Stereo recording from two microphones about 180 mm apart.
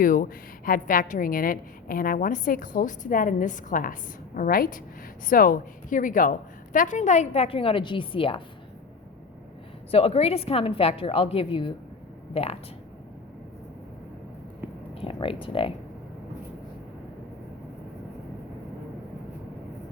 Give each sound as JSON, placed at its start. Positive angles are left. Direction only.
{"t": 0.0, "sound": "a woman's voice", "side_deg": 50}
{"t": 9.9, "sound": "a woman's voice", "side_deg": 35}
{"t": 14.9, "sound": "speech", "side_deg": 30}